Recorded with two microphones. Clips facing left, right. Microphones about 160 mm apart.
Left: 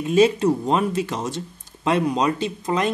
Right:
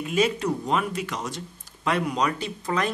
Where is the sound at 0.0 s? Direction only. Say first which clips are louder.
Left 7 dB; 30° left (ahead or behind).